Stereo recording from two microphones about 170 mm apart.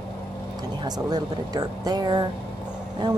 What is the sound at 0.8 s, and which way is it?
A woman's voice, 25° right (ahead or behind).